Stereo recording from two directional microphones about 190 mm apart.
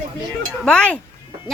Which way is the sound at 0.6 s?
5° left (ahead or behind).